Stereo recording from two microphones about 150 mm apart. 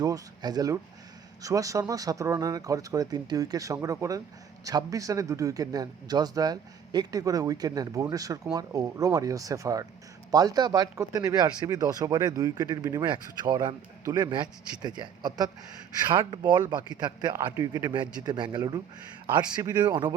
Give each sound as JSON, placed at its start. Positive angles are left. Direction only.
{"t": 0.0, "sound": "speech", "side_deg": -25}